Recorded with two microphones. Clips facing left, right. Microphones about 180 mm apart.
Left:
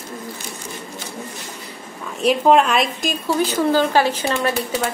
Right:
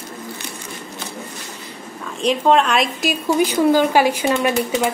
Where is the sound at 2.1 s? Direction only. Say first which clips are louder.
Left 1 dB; 5° left (ahead or behind).